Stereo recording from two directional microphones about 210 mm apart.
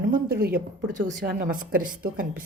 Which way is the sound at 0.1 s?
45° right (ahead or behind).